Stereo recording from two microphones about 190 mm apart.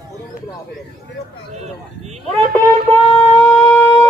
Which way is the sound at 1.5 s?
35° right (ahead or behind).